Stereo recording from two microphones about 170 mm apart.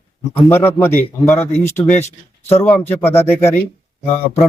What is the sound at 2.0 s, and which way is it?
Speech, 40° left (ahead or behind).